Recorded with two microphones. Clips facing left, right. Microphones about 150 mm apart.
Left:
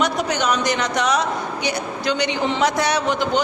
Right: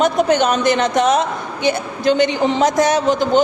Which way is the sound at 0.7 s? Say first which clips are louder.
Right 6 dB; 25° right (ahead or behind).